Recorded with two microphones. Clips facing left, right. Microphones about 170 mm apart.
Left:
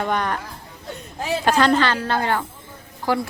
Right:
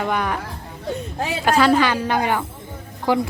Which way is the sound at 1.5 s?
5° right (ahead or behind).